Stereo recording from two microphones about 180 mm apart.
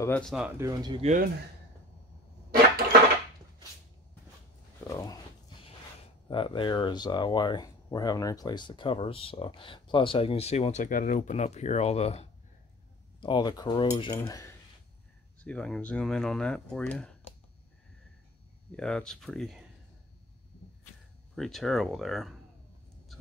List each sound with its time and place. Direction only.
0.0 s speech: 5° left (ahead or behind)
0.6 s speech: 20° right (ahead or behind)
1.0 s speech: 45° right (ahead or behind)
4.8 s a sound: 20° left (ahead or behind)
6.2 s speech: 30° left (ahead or behind)
14.1 s cutlery: 15° left (ahead or behind)
15.4 s speech: 5° left (ahead or behind)
18.8 s speech: 5° left (ahead or behind)
21.4 s speech: centre (ahead or behind)